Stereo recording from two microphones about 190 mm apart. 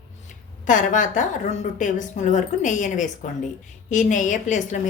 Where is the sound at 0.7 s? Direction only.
40° left (ahead or behind).